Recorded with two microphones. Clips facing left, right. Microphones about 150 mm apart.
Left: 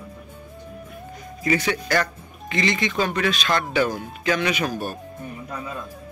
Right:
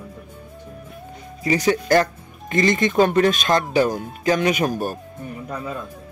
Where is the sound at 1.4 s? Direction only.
30° right (ahead or behind).